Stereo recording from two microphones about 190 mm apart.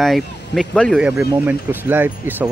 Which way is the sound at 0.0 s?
Centre (ahead or behind).